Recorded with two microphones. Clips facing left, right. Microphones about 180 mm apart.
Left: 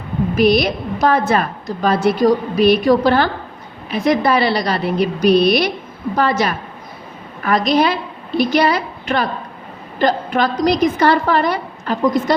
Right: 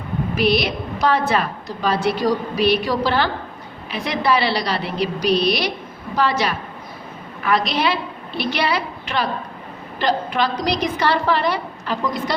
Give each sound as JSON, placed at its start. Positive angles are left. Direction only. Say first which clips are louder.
{"t": 0.3, "sound": "a woman's voice", "louder": "left 5 dB", "side_deg": 45}